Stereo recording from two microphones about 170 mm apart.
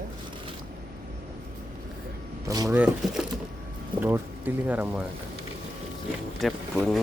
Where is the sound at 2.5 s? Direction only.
20° right (ahead or behind).